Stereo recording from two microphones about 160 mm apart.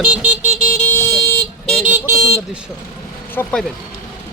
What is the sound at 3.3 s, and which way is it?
Speech, 10° left (ahead or behind).